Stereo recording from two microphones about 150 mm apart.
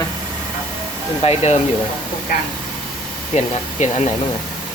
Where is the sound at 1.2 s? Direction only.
45° left (ahead or behind).